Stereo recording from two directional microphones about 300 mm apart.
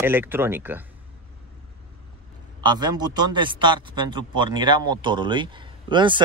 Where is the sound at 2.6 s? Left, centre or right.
Centre.